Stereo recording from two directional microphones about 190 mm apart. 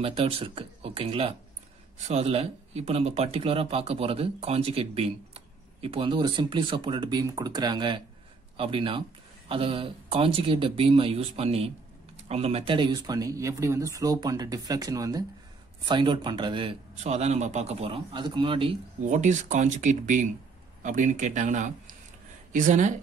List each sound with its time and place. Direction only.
0.0 s a man's voice: 30° right (ahead or behind)
19.1 s speech: 40° right (ahead or behind)